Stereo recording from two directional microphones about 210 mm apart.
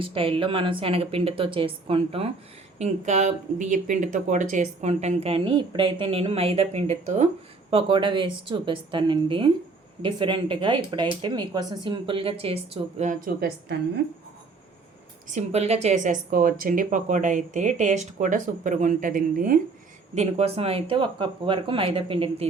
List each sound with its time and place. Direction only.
0.0 s speech: 25° right (ahead or behind); by 13.7 s 45° right (ahead or behind)
15.3 s speech: 30° right (ahead or behind)